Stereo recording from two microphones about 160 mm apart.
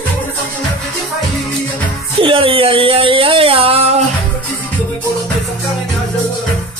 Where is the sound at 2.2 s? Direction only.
35° right (ahead or behind).